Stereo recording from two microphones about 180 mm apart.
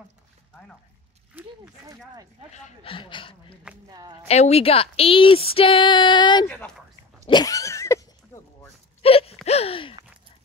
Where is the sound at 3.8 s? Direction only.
25° right (ahead or behind).